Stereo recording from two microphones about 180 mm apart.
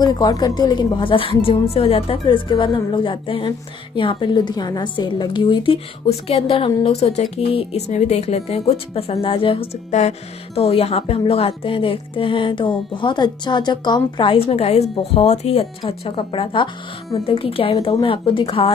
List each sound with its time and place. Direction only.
0.0 s a woman's voice: 20° left (ahead or behind)